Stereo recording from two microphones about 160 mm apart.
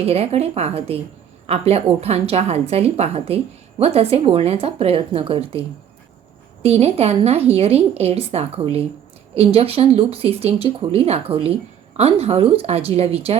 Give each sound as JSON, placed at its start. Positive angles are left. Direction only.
{"t": 0.0, "sound": "a woman's voice", "side_deg": -40}